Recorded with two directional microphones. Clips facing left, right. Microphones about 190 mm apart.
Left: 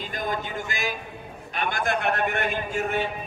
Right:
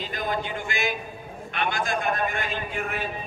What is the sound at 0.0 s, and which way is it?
A man's voice, 45° left (ahead or behind).